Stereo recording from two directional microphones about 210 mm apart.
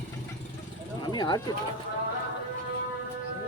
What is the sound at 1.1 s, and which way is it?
Speech, 20° left (ahead or behind).